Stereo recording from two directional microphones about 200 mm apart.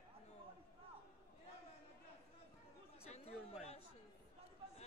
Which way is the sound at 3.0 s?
30° left (ahead or behind).